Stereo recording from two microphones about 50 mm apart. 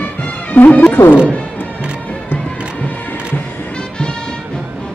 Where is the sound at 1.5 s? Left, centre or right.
Left.